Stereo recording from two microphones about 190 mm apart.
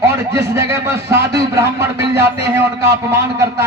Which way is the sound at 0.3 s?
15° right (ahead or behind).